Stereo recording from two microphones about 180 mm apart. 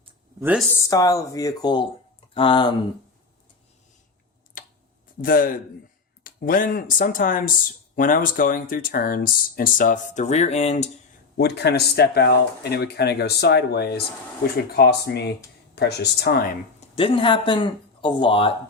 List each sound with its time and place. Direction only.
0.3 s speech: 10° right (ahead or behind)
0.7 s speech: 15° left (ahead or behind)
5.2 s speech: 50° left (ahead or behind)
11.3 s speech: 65° left (ahead or behind)
16.8 s speech: 30° left (ahead or behind)